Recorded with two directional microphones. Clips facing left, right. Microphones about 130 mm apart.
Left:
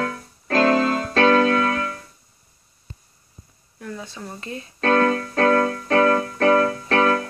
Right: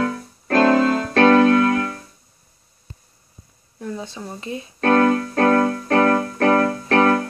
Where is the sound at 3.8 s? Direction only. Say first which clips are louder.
Right 4 dB; 20° right (ahead or behind).